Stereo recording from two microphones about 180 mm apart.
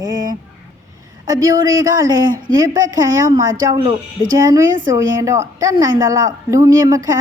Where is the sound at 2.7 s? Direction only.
20° right (ahead or behind).